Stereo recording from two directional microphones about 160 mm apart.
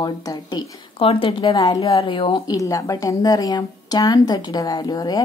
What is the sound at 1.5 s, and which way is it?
Speech, 20° left (ahead or behind).